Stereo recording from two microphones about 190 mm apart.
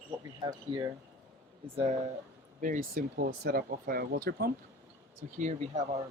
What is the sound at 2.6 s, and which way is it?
Speech, 45° right (ahead or behind).